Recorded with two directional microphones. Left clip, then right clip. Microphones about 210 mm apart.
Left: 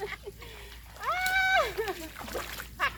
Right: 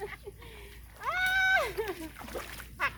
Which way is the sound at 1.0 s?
25° right (ahead or behind).